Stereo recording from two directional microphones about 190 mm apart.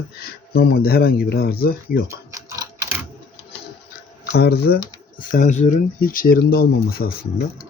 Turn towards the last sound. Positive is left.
turn(degrees=55)  # may be behind; listen again after turning